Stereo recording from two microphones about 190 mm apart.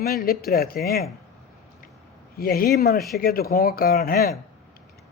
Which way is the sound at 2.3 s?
50° left (ahead or behind).